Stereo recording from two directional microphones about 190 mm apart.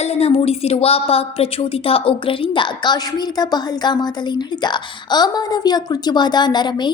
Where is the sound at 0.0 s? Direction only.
35° left (ahead or behind).